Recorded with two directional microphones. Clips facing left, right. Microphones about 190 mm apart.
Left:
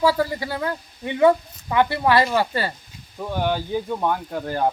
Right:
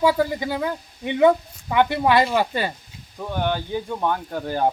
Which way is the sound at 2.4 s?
15° right (ahead or behind).